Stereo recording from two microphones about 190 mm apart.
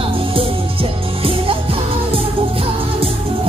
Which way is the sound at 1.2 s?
30° right (ahead or behind).